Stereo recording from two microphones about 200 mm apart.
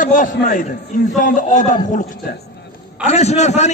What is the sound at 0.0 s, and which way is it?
A man's voice, 40° left (ahead or behind).